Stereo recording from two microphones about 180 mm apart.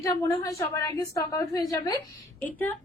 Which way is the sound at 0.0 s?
15° left (ahead or behind).